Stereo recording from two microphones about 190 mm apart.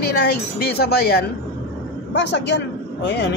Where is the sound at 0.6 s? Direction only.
55° left (ahead or behind).